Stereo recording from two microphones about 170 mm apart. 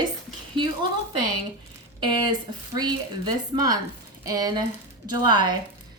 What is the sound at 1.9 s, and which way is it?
Speech, 25° right (ahead or behind).